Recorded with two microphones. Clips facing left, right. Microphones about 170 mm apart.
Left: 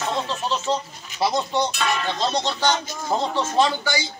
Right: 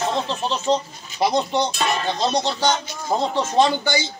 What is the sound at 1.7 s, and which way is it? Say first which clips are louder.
Speech: right 2 dB; 35° right (ahead or behind).